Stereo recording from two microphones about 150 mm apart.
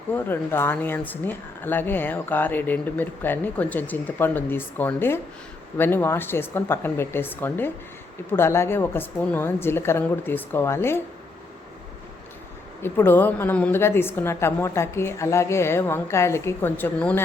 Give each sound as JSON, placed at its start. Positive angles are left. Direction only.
{"t": 0.1, "sound": "speech", "side_deg": 15}
{"t": 12.8, "sound": "speech", "side_deg": 15}